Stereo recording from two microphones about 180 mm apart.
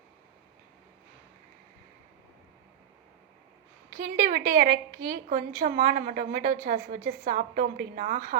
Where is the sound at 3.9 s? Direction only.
55° right (ahead or behind).